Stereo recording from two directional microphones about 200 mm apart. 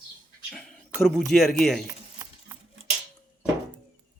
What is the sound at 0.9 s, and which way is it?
Speech, centre (ahead or behind).